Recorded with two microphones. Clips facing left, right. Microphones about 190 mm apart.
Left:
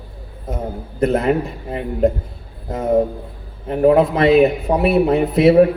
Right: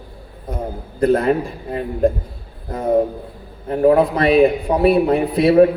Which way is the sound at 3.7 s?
25° left (ahead or behind).